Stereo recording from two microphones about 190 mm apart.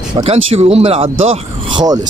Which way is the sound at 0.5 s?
30° right (ahead or behind).